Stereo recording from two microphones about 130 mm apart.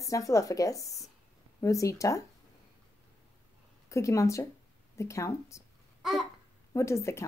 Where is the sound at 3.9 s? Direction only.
25° left (ahead or behind).